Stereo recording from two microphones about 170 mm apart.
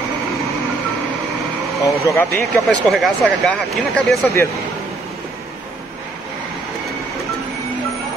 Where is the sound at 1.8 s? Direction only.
15° left (ahead or behind).